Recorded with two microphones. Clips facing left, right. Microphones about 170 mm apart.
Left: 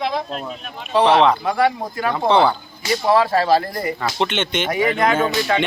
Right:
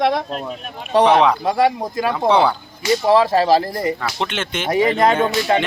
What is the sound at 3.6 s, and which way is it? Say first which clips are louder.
Speech: right 3 dB; 30° right (ahead or behind).